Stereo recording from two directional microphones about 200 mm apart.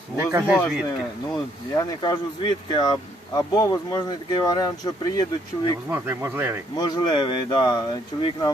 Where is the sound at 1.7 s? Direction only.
20° left (ahead or behind).